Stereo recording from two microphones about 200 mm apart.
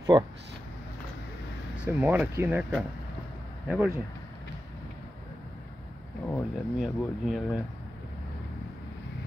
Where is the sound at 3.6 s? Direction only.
10° right (ahead or behind).